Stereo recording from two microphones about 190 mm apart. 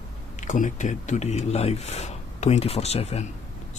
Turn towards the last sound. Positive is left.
turn(degrees=35)  # may be behind; listen again after turning